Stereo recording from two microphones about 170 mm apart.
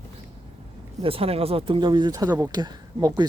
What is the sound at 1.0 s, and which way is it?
Speech, 35° right (ahead or behind).